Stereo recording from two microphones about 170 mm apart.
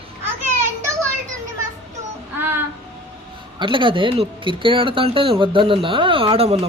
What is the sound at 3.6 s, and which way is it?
Speech, 30° right (ahead or behind).